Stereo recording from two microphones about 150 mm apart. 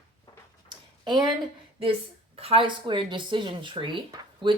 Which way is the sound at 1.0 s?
30° right (ahead or behind).